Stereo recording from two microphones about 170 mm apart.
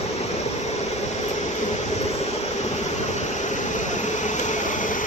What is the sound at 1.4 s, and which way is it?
Vehicle, 45° left (ahead or behind).